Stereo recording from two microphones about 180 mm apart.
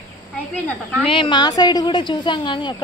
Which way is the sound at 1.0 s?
30° left (ahead or behind).